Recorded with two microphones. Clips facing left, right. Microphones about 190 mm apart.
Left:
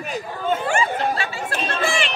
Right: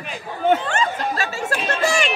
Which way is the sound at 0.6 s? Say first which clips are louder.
Left 1 dB; 10° left (ahead or behind).